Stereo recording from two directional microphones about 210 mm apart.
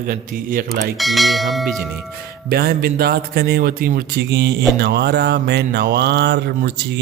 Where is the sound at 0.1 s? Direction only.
40° right (ahead or behind).